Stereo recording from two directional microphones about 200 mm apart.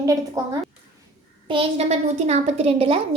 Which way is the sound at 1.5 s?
30° right (ahead or behind).